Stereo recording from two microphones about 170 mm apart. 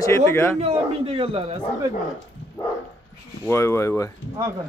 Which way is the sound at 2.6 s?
25° left (ahead or behind).